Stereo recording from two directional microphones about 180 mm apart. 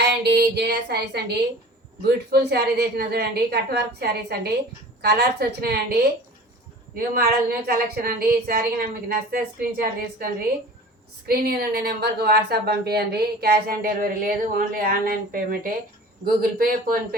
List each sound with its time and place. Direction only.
0.0 s a sound: 70° right (ahead or behind)
2.0 s speech: 65° right (ahead or behind)
7.7 s speech: 60° right (ahead or behind)
11.3 s speech: 60° right (ahead or behind)